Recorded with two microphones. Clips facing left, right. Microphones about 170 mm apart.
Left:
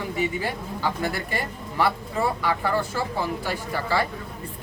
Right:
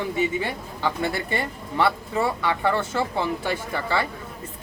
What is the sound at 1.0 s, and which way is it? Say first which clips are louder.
Speech: right 2 dB; 25° right (ahead or behind).